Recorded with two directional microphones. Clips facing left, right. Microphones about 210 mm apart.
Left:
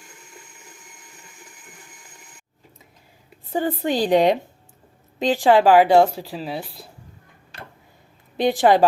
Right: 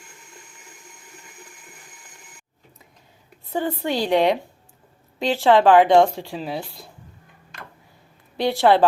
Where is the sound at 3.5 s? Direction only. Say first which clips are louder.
Left 2 dB; 15° left (ahead or behind).